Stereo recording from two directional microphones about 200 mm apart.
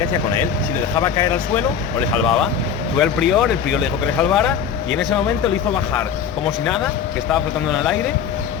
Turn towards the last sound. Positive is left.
turn(degrees=0)  # may be behind; listen again after turning